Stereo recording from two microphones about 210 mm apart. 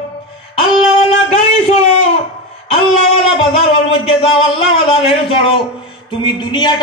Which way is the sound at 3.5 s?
25° left (ahead or behind).